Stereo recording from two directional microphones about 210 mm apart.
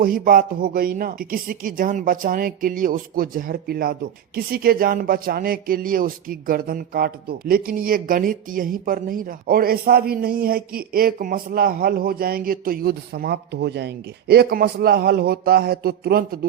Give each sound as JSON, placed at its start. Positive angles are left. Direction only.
{"t": 0.0, "sound": "speech", "side_deg": -40}